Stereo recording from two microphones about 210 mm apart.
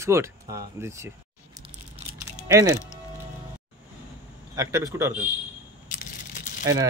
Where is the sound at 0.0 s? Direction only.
15° right (ahead or behind).